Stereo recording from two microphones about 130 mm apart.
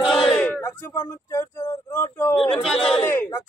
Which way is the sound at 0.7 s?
20° left (ahead or behind).